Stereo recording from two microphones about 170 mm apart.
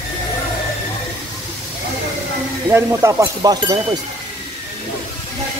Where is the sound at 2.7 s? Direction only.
20° right (ahead or behind).